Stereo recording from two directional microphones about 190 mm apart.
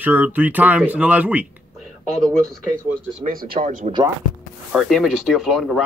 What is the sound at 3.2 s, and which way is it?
Speech, 50° right (ahead or behind).